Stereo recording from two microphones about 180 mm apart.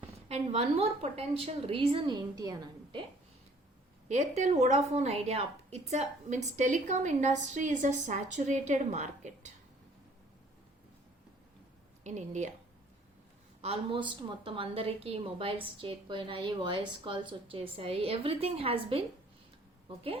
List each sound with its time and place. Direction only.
0.3 s a woman's voice: 35° right (ahead or behind); by 3.0 s 20° right (ahead or behind)
4.1 s a woman's voice: 40° right (ahead or behind)
12.0 s a woman's voice: 40° right (ahead or behind)
13.6 s a woman's voice: 30° right (ahead or behind)